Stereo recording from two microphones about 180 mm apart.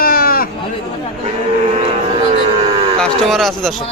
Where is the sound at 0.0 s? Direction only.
55° left (ahead or behind).